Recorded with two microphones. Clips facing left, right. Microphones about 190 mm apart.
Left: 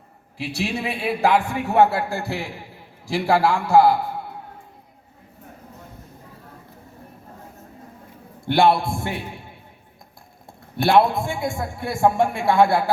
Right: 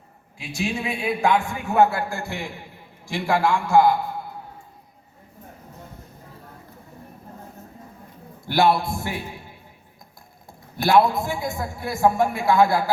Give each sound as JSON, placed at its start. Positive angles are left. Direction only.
{"t": 0.4, "sound": "a man's voice", "side_deg": 35}
{"t": 8.4, "sound": "a man's voice", "side_deg": 25}
{"t": 8.7, "sound": "a man's voice", "side_deg": 55}
{"t": 10.8, "sound": "a man's voice", "side_deg": 30}